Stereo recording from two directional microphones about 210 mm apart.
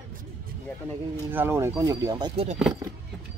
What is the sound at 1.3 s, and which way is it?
Speech, 10° right (ahead or behind).